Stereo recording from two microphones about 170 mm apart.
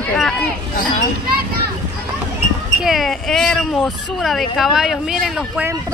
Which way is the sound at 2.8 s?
Centre (ahead or behind).